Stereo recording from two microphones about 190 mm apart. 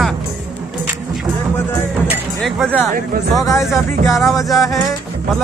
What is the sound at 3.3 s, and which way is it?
Speech, 15° left (ahead or behind).